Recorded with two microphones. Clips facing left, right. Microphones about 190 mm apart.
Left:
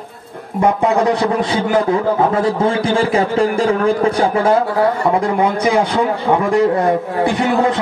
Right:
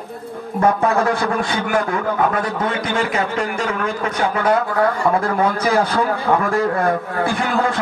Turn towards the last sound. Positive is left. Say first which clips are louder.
# left 4 dB
turn(degrees=20)  # may be behind; listen again after turning